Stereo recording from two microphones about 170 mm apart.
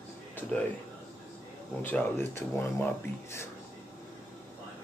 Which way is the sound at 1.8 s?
10° left (ahead or behind).